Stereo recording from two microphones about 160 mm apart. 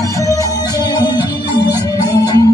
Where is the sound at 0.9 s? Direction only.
25° left (ahead or behind).